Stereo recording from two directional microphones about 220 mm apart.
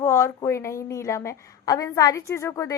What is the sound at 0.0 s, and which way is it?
A woman's voice, 10° left (ahead or behind).